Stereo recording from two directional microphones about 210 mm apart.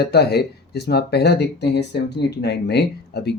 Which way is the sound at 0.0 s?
50° left (ahead or behind).